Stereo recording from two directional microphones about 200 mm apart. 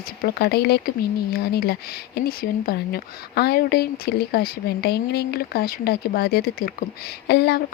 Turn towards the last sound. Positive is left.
turn(degrees=55)  # may be behind; listen again after turning